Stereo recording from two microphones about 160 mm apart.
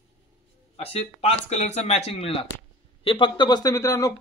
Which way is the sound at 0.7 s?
40° left (ahead or behind).